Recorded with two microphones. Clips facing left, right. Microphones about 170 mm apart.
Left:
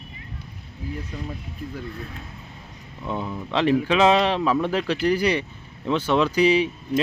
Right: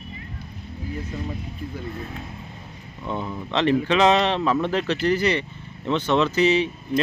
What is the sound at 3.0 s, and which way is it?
Speech, 5° left (ahead or behind).